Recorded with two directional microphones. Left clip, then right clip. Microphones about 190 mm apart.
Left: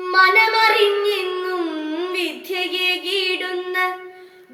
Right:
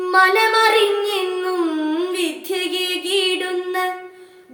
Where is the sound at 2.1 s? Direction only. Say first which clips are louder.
Right 1 dB; 25° right (ahead or behind).